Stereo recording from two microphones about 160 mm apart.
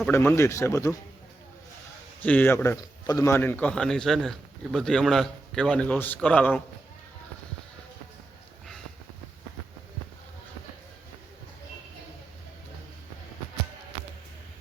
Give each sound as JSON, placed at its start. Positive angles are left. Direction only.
{"t": 0.1, "sound": "a man's voice", "side_deg": 15}
{"t": 2.2, "sound": "a man's voice", "side_deg": 10}